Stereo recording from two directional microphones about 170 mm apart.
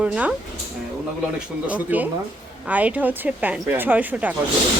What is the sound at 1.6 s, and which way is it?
Speech, 10° right (ahead or behind).